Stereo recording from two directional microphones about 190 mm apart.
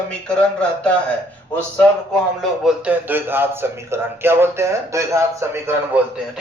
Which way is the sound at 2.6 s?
10° right (ahead or behind).